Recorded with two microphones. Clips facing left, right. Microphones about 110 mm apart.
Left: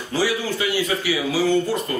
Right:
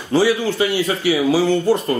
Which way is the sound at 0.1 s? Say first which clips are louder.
Right 6 dB; 30° right (ahead or behind).